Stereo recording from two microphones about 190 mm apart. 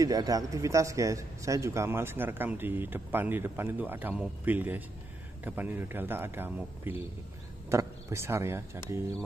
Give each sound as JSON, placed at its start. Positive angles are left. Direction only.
{"t": 0.0, "sound": "speech", "side_deg": -20}